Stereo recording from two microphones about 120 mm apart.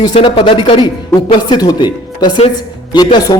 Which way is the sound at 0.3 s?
45° left (ahead or behind).